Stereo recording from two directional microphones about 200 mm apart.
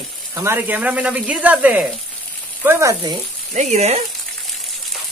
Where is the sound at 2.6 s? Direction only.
15° right (ahead or behind).